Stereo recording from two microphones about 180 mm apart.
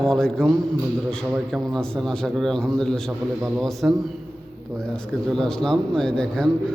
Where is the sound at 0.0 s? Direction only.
5° left (ahead or behind).